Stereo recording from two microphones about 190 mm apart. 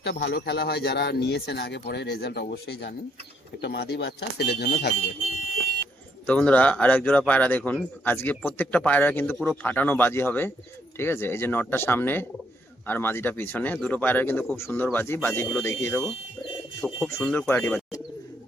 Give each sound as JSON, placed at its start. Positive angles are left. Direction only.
{"t": 0.0, "sound": "speech", "side_deg": 65}
{"t": 6.2, "sound": "speech", "side_deg": 5}